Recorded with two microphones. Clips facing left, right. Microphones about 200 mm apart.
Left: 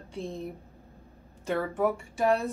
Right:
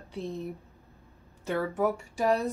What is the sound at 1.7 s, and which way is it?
Speech, centre (ahead or behind).